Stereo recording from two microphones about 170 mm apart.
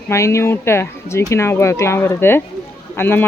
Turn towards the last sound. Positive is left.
turn(degrees=10)  # may be behind; listen again after turning